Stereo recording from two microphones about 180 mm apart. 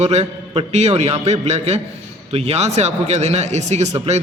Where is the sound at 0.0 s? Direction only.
35° right (ahead or behind).